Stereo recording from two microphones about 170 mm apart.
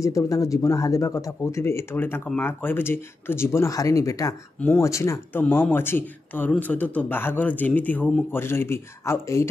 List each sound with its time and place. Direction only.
0.0 s speech: 20° left (ahead or behind)